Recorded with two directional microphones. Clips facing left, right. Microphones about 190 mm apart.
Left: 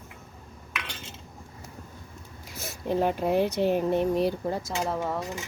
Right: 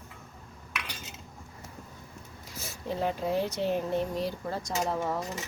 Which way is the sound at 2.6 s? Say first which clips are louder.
Left 6 dB; 55° left (ahead or behind).